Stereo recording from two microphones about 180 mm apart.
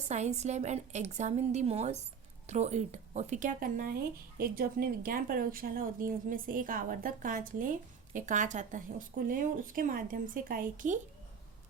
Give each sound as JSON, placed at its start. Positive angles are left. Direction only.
{"t": 0.1, "sound": "a woman's voice", "side_deg": -40}